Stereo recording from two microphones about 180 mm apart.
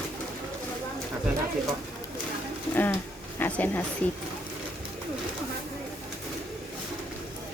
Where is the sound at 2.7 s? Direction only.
10° left (ahead or behind).